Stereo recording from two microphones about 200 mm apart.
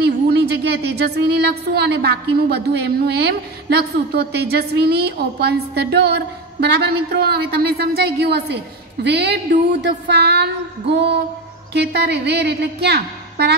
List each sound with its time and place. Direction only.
0.0 s a woman's voice: 55° right (ahead or behind)